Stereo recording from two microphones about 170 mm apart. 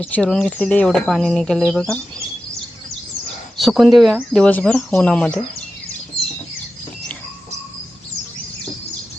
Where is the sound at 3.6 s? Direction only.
Centre (ahead or behind).